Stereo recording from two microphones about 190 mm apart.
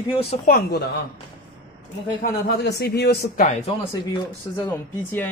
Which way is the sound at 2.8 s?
55° left (ahead or behind).